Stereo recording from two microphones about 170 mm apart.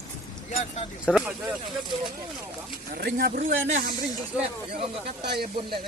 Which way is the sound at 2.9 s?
65° right (ahead or behind).